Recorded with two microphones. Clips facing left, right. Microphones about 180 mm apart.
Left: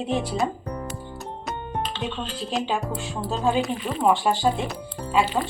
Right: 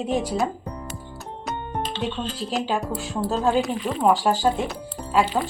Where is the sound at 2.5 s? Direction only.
Centre (ahead or behind).